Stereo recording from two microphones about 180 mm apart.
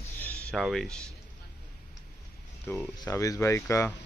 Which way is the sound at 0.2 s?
10° left (ahead or behind).